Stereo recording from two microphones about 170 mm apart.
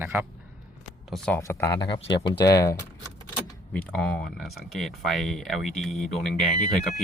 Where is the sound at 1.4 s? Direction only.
15° left (ahead or behind).